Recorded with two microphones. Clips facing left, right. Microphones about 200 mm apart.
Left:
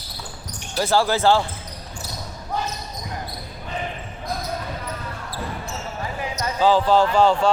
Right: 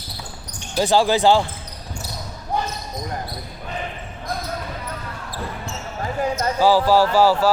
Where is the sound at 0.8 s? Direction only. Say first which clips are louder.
Right 3 dB; 15° right (ahead or behind).